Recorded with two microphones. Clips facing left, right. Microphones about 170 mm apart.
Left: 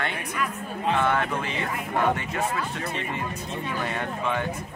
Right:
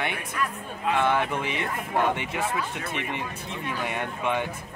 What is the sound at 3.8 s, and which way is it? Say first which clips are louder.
Speech: right 1 dB; 15° right (ahead or behind).